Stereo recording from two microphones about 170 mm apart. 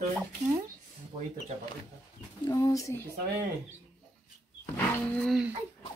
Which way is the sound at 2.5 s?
20° left (ahead or behind).